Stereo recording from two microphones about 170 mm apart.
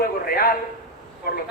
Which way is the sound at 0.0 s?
60° left (ahead or behind).